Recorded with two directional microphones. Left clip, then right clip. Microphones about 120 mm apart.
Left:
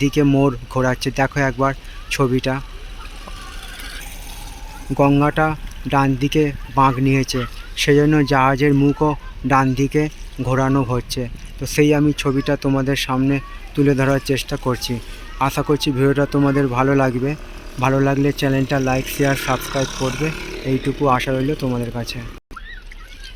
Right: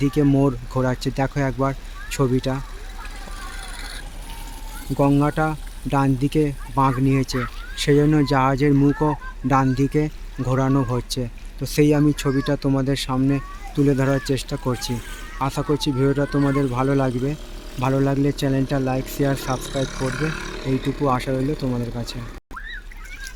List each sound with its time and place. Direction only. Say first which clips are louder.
0.0 s speech: left 3 dB; 5° right (ahead or behind)
3.8 s vehicle: left 2 dB; 65° left (ahead or behind)
4.9 s speech: left 4 dB; 5° right (ahead or behind)
19.8 s speech: left 3 dB; 75° left (ahead or behind); by 20.8 s 90° left
21.0 s speech: left 5 dB; centre (ahead or behind)